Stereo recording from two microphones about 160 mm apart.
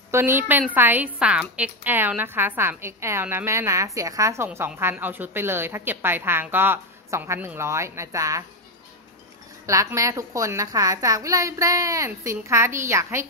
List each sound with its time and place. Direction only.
0.1 s a woman's voice: 15° right (ahead or behind)
9.7 s a child's voice: 20° right (ahead or behind)